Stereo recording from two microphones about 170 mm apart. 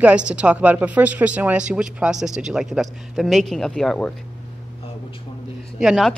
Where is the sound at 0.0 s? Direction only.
5° right (ahead or behind).